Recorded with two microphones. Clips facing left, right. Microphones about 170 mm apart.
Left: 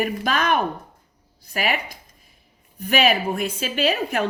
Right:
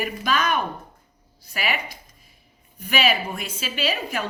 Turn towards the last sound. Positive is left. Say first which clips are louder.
# left 5 dB
turn(degrees=50)  # may be behind; listen again after turning